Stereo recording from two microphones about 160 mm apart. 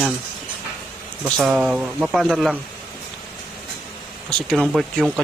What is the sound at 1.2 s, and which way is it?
Speech, 5° right (ahead or behind).